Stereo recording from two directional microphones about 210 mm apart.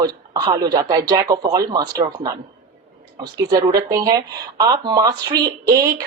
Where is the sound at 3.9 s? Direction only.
15° right (ahead or behind).